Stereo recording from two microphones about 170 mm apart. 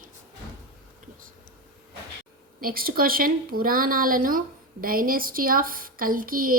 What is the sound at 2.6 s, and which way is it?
Speech, 60° right (ahead or behind).